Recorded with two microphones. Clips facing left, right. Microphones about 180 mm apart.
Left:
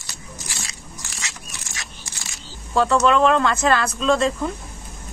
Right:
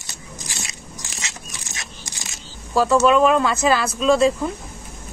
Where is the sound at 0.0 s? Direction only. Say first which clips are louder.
Right 1 dB; 20° right (ahead or behind).